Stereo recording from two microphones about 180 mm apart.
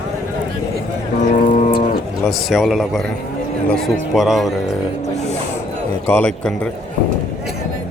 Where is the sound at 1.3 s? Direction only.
40° left (ahead or behind).